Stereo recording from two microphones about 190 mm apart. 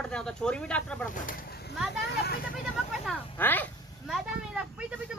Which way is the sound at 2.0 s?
60° left (ahead or behind).